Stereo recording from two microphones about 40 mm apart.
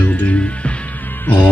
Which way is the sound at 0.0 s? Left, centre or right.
Left.